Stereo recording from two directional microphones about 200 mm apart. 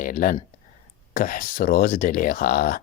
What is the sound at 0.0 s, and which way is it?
Speech, 45° left (ahead or behind).